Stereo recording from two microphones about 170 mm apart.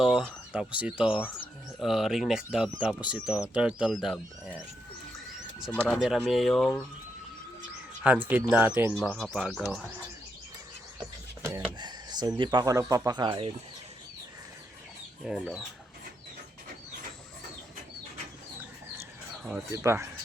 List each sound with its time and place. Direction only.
0.0 s speech: centre (ahead or behind)
1.2 s speech: 10° left (ahead or behind)
1.8 s speech: centre (ahead or behind)
5.7 s speech: 10° left (ahead or behind)
8.0 s speech: 10° right (ahead or behind)
11.8 s speech: 25° right (ahead or behind)
15.2 s speech: centre (ahead or behind)
19.5 s speech: 15° right (ahead or behind)